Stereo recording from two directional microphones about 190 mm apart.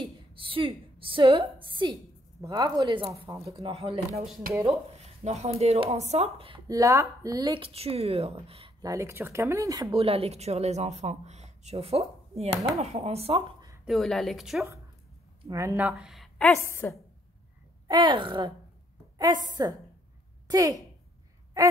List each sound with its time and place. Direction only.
0.0 s a sound: 25° right (ahead or behind)
2.4 s speech: 20° right (ahead or behind)
3.4 s speech: 30° right (ahead or behind)
6.7 s speech: 15° right (ahead or behind)
8.8 s speech: 15° right (ahead or behind); by 13.7 s 30° right (ahead or behind)
13.8 s a woman's voice: centre (ahead or behind)
15.4 s a woman's voice: 15° right (ahead or behind); by 16.9 s 15° left (ahead or behind)
17.8 s a woman's voice: 25° right (ahead or behind)